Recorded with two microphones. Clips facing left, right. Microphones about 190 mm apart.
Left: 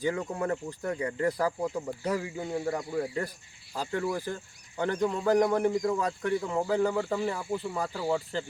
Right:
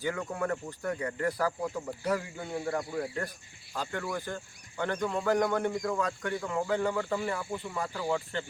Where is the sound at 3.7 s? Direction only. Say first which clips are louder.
Left 4 dB; 30° left (ahead or behind).